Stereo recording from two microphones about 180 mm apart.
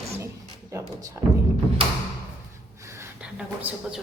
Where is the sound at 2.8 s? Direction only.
15° right (ahead or behind).